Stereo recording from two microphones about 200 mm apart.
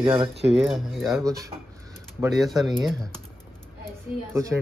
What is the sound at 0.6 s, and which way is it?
Speech, centre (ahead or behind).